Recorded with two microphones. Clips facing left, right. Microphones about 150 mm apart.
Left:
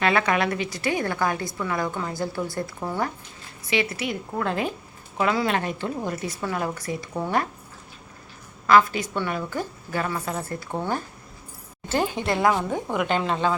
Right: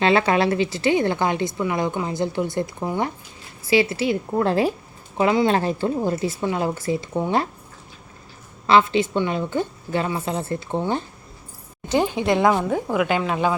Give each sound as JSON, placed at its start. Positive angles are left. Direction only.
{"t": 0.0, "sound": "a woman's voice", "side_deg": -30}
{"t": 3.7, "sound": "a woman's voice", "side_deg": -30}
{"t": 8.6, "sound": "a woman's voice", "side_deg": -25}
{"t": 12.5, "sound": "a woman's voice", "side_deg": -5}